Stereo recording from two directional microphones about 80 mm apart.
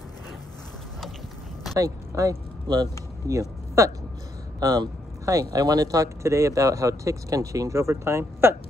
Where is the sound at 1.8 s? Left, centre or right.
Right.